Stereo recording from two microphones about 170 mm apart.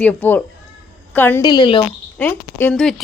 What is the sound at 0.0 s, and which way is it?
A woman's voice, 10° left (ahead or behind).